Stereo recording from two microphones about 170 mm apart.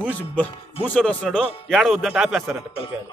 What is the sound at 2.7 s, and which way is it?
Speech, 30° left (ahead or behind).